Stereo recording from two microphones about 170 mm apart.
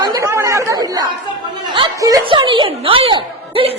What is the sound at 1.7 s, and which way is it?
A woman's voice, 25° right (ahead or behind).